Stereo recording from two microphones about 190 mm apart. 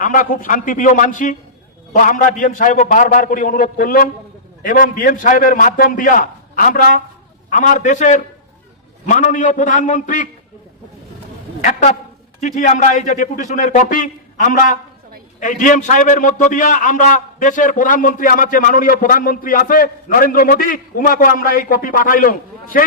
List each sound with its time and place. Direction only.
0.0 s a man's voice: 45° left (ahead or behind)
11.6 s a sound: 40° left (ahead or behind)
12.4 s a man's voice: 40° left (ahead or behind)